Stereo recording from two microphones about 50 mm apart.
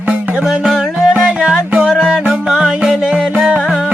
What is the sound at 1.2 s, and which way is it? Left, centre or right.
Music, centre.